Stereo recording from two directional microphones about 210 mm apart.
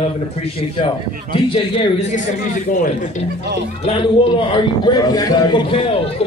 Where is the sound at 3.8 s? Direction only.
25° left (ahead or behind).